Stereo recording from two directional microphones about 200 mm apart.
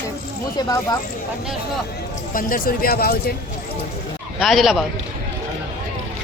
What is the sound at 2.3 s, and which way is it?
Speech, 45° left (ahead or behind).